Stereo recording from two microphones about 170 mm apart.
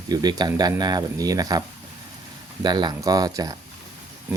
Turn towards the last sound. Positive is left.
turn(degrees=-20)  # may be behind; listen again after turning